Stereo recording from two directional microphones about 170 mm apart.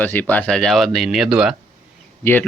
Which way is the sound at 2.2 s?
10° left (ahead or behind).